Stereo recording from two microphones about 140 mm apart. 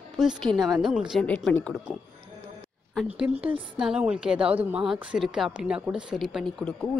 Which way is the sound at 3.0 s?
10° right (ahead or behind).